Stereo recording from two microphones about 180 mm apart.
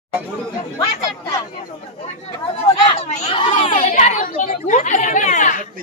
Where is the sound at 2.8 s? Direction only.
30° left (ahead or behind).